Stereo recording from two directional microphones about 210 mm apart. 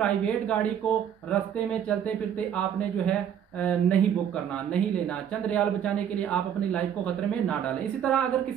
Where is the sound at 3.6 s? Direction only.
5° left (ahead or behind).